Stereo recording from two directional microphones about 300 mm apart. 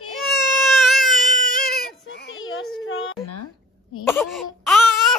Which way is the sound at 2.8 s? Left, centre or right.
Left.